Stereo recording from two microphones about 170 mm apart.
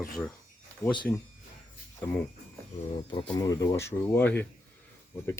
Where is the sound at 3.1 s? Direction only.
20° left (ahead or behind).